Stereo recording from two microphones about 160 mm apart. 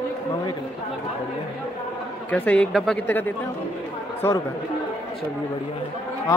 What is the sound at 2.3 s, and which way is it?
Speech, 10° left (ahead or behind).